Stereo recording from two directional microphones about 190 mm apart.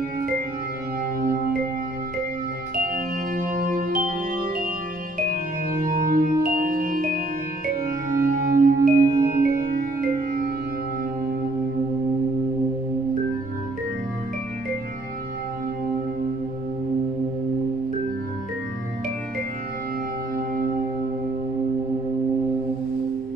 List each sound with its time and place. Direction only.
2.9 s music: 45° right (ahead or behind)
5.2 s music: 45° right (ahead or behind)
20.3 s music: 50° right (ahead or behind)